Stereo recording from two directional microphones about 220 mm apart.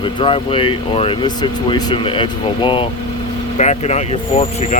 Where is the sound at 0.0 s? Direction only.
25° left (ahead or behind).